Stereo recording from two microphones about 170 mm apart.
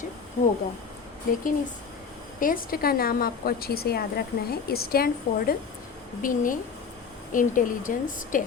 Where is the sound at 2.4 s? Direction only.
60° left (ahead or behind).